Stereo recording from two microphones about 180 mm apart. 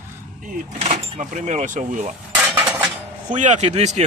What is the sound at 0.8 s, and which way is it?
Speech, 40° right (ahead or behind).